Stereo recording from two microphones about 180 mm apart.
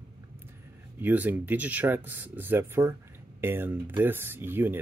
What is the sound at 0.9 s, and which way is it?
Speech, 10° right (ahead or behind).